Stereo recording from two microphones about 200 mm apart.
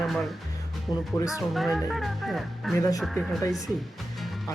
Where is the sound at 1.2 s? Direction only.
15° left (ahead or behind).